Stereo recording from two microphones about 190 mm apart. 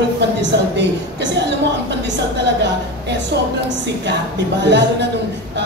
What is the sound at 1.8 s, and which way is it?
Speech, 65° right (ahead or behind).